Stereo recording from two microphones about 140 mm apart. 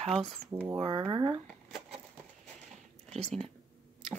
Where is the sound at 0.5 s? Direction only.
20° right (ahead or behind).